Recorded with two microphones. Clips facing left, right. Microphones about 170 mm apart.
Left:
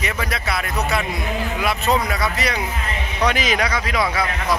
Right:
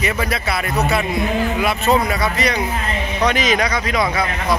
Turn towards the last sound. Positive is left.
turn(degrees=5)  # may be behind; listen again after turning